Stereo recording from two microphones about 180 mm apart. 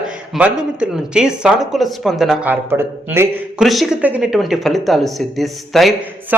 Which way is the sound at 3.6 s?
Centre (ahead or behind).